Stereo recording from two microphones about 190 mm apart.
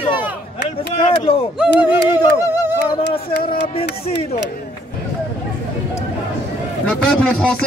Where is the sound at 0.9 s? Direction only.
30° left (ahead or behind).